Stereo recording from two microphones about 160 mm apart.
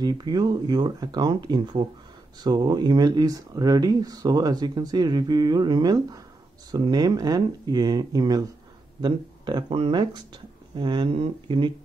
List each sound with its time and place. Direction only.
0.0 s speech: 25° right (ahead or behind)